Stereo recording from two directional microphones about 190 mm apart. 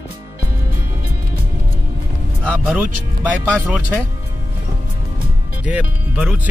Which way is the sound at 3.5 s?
5° right (ahead or behind).